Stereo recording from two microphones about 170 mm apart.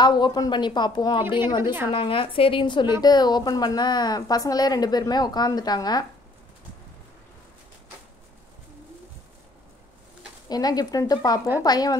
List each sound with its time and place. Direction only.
0.0 s a woman's voice: 25° left (ahead or behind)
1.6 s a woman's voice: 15° right (ahead or behind)
1.9 s a woman's voice: 30° left (ahead or behind)
10.5 s a woman's voice: 20° left (ahead or behind)